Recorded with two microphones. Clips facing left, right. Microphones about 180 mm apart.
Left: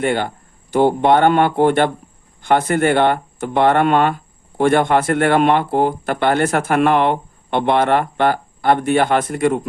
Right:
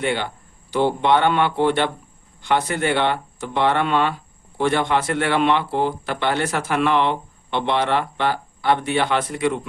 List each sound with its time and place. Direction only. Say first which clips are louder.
0.0 s speech: left 5 dB; 45° left (ahead or behind)